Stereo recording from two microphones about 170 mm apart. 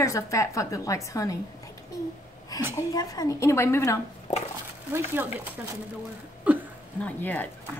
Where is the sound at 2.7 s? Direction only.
20° left (ahead or behind).